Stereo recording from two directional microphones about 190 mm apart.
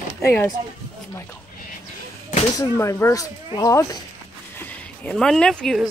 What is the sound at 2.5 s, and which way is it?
Speech, 15° left (ahead or behind).